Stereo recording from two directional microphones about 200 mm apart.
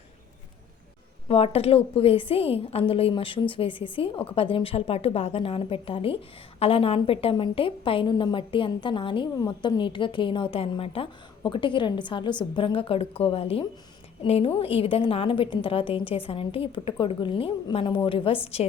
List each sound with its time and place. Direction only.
1.3 s a woman's voice: 30° left (ahead or behind)